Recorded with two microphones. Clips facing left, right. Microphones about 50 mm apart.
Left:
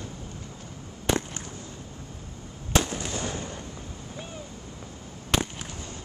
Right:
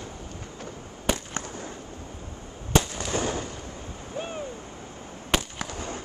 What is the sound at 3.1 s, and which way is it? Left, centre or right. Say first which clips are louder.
Fireworks: right 4 dB; right.